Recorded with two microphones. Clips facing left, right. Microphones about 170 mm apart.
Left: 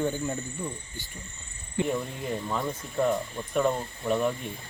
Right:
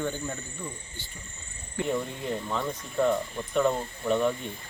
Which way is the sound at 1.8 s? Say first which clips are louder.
Left 2 dB; 20° left (ahead or behind).